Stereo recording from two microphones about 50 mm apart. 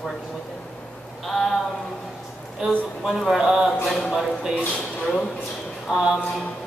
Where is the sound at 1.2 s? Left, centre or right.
Centre.